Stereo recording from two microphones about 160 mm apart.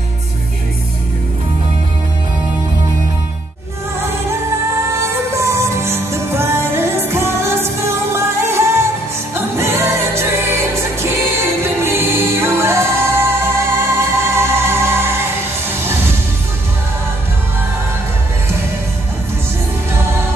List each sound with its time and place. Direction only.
4.9 s music: 15° right (ahead or behind)
19.9 s music: 15° right (ahead or behind)